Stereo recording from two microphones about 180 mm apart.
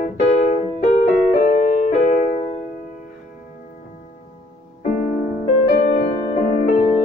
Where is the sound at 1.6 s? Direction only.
45° left (ahead or behind).